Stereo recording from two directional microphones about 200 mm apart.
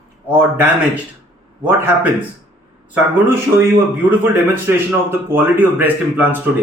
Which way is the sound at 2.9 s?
10° right (ahead or behind).